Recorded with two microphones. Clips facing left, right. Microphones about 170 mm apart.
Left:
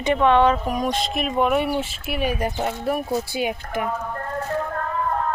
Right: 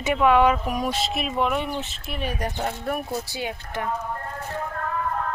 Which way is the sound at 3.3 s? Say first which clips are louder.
Left 6 dB; 15° left (ahead or behind).